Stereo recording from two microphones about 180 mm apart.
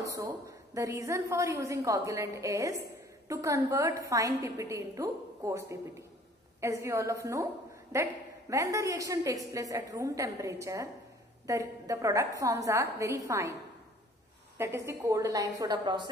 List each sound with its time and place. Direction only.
0.0 s a woman's voice: 20° right (ahead or behind)
14.6 s a woman's voice: 15° right (ahead or behind)